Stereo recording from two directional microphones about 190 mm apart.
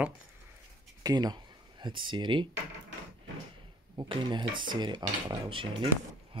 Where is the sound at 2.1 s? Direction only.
25° right (ahead or behind).